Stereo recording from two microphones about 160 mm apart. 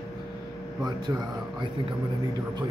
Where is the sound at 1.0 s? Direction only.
30° right (ahead or behind).